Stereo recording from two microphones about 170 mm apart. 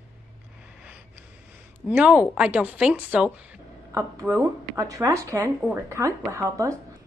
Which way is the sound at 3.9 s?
20° right (ahead or behind).